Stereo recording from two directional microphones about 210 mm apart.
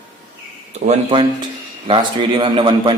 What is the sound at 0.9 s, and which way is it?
A man's voice, 25° right (ahead or behind).